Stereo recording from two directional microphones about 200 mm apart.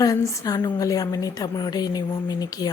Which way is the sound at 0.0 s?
15° left (ahead or behind).